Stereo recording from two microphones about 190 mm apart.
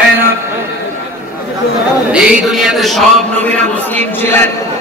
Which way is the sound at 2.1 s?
5° right (ahead or behind).